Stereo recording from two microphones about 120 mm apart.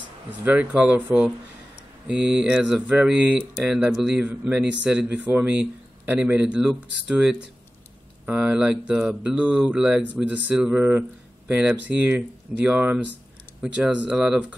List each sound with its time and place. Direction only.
0.5 s speech: 10° right (ahead or behind)